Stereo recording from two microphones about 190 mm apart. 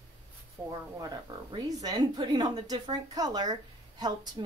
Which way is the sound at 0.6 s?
10° right (ahead or behind).